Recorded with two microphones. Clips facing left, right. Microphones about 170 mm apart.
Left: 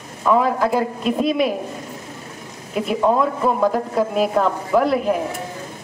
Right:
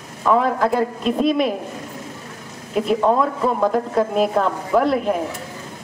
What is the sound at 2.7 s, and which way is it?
Speech, 5° left (ahead or behind).